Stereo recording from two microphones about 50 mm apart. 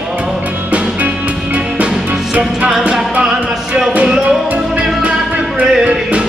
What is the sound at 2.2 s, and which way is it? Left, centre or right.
Music, centre.